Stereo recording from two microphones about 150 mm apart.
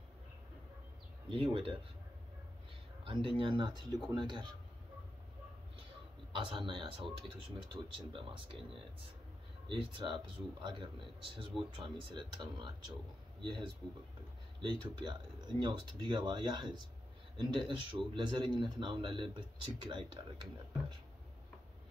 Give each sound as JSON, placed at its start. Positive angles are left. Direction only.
{"t": 1.3, "sound": "speech", "side_deg": -35}
{"t": 3.0, "sound": "speech", "side_deg": -35}
{"t": 6.3, "sound": "speech", "side_deg": -35}
{"t": 9.7, "sound": "speech", "side_deg": -35}